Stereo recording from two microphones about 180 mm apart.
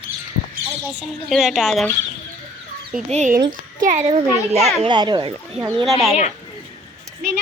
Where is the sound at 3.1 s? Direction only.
40° right (ahead or behind).